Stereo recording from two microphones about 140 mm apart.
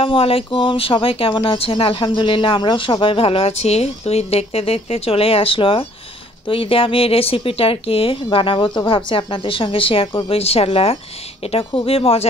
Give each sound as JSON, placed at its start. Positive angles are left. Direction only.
{"t": 0.0, "sound": "speech", "side_deg": 40}